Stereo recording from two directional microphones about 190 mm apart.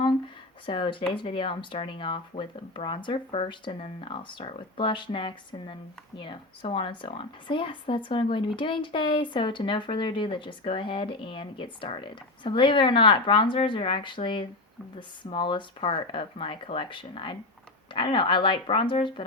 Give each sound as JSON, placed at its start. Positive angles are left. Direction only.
{"t": 0.6, "sound": "speech", "side_deg": 25}